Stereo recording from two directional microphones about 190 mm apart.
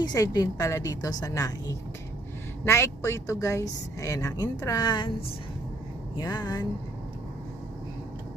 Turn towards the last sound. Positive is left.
turn(degrees=20)  # may be behind; listen again after turning